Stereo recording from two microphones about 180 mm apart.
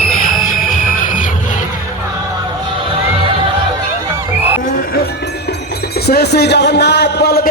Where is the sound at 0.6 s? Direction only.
45° left (ahead or behind).